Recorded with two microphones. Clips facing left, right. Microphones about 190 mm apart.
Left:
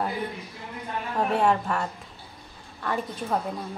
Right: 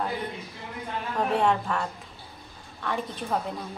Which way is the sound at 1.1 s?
Centre (ahead or behind).